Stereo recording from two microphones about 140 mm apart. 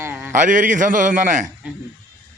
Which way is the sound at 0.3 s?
70° right (ahead or behind).